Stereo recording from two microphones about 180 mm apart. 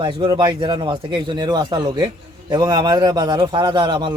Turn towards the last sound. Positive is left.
turn(degrees=-25)  # may be behind; listen again after turning